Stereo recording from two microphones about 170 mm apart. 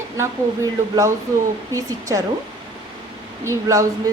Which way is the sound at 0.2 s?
20° right (ahead or behind).